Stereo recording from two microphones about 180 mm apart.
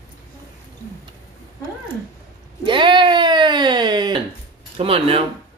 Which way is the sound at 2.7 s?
25° right (ahead or behind).